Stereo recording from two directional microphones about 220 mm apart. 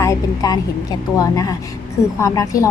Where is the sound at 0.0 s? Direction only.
15° left (ahead or behind).